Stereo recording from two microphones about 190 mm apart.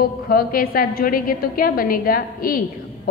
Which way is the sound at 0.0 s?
50° left (ahead or behind).